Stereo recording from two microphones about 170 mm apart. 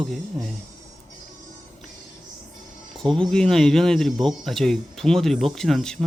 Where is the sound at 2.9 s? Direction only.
Centre (ahead or behind).